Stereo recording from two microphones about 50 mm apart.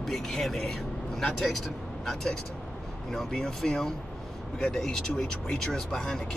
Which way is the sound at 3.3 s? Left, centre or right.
Centre.